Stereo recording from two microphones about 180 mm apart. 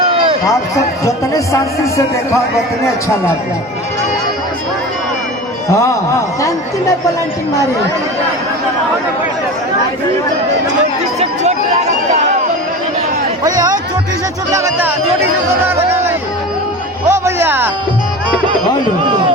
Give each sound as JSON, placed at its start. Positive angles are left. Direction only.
{"t": 0.1, "sound": "a sound", "side_deg": -30}
{"t": 1.8, "sound": "speech", "side_deg": 15}
{"t": 11.2, "sound": "chatter", "side_deg": -40}
{"t": 13.4, "sound": "speech", "side_deg": -20}
{"t": 17.1, "sound": "music", "side_deg": -15}